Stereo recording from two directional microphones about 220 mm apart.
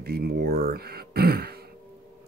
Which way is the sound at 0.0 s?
45° right (ahead or behind).